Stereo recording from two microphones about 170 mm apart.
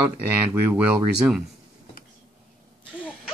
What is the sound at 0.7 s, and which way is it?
Speech, 5° right (ahead or behind).